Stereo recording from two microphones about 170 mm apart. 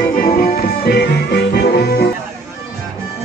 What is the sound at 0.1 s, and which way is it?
Music, 55° left (ahead or behind).